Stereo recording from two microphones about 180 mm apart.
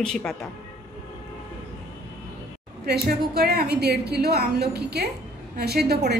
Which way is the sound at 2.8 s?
60° right (ahead or behind).